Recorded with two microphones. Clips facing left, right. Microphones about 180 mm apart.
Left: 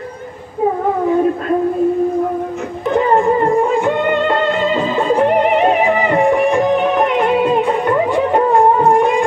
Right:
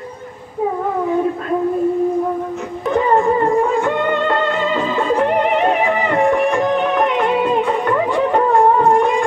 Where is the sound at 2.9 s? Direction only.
20° left (ahead or behind).